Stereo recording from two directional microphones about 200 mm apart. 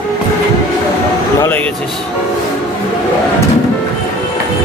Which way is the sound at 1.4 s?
10° left (ahead or behind).